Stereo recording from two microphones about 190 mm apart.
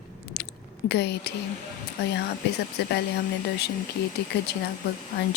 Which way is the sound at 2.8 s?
60° left (ahead or behind).